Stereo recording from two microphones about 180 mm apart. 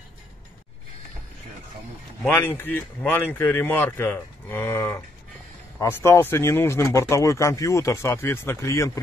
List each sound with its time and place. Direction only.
2.2 s speech: 10° left (ahead or behind)